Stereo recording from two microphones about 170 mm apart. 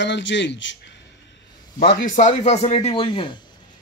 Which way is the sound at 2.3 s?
45° left (ahead or behind).